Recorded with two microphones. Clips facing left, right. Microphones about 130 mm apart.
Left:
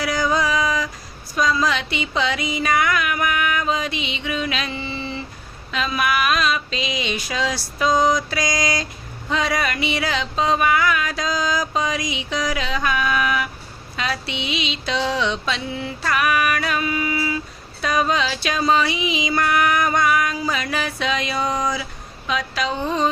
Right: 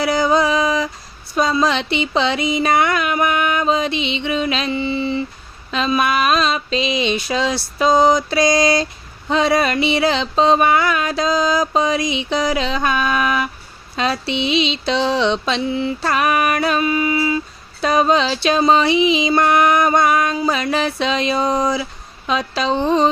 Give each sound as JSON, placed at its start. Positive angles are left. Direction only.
{"t": 0.0, "sound": "music", "side_deg": -25}